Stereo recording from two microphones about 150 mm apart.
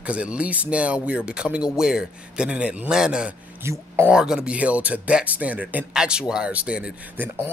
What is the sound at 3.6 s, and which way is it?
Speech, 15° right (ahead or behind).